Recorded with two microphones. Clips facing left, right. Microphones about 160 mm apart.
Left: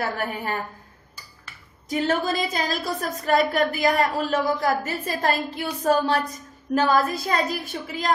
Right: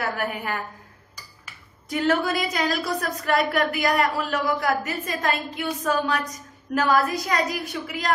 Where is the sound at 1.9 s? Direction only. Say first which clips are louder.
Right 1 dB; 25° left (ahead or behind).